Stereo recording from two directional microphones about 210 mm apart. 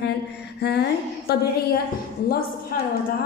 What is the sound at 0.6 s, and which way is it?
Music, 50° left (ahead or behind).